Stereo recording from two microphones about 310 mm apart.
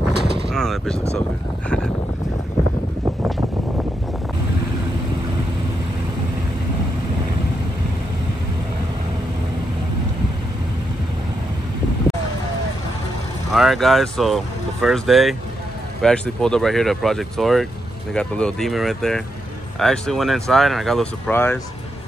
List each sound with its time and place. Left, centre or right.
0.1 s a sound: right
0.5 s speech: centre
13.5 s speech: centre